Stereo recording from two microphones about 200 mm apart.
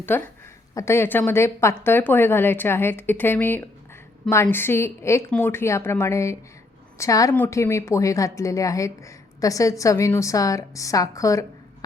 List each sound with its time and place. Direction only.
0.1 s speech: 10° left (ahead or behind)